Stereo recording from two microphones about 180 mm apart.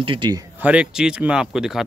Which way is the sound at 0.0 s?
25° right (ahead or behind).